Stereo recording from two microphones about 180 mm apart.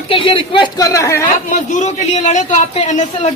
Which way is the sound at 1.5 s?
40° left (ahead or behind).